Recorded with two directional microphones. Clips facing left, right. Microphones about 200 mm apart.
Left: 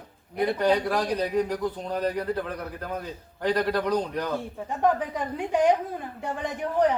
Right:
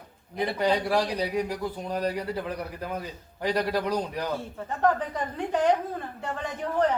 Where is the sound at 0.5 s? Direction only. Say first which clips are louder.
Right 1 dB; 10° right (ahead or behind).